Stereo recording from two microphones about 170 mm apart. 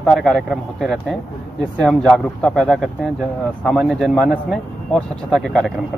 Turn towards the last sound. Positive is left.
turn(degrees=0)  # may be behind; listen again after turning